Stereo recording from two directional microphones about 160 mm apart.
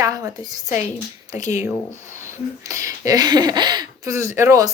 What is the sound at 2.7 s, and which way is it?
Speech, 20° right (ahead or behind).